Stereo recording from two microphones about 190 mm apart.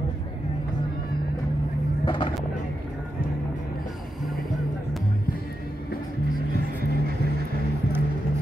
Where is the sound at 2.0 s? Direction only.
25° left (ahead or behind).